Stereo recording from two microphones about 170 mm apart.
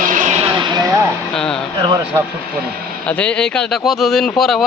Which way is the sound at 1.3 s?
5° left (ahead or behind).